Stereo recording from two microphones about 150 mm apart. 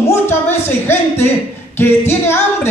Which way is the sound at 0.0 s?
15° left (ahead or behind).